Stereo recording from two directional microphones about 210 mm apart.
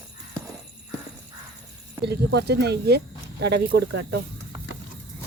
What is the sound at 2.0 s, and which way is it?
Speech, 55° right (ahead or behind).